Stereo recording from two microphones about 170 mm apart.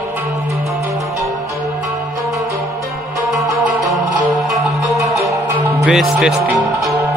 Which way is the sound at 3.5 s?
Centre (ahead or behind).